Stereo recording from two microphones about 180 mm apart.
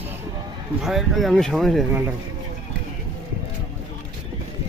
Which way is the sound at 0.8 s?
Centre (ahead or behind).